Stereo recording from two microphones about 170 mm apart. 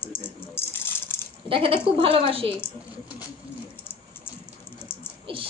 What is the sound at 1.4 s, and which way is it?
Speech, 30° right (ahead or behind).